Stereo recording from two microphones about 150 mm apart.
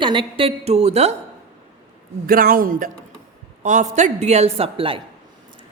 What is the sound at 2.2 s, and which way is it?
Speech, 70° right (ahead or behind).